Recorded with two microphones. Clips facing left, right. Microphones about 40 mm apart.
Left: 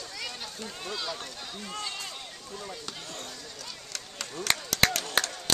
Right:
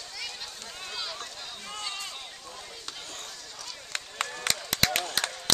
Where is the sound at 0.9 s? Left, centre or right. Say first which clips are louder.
Left 2 dB; centre.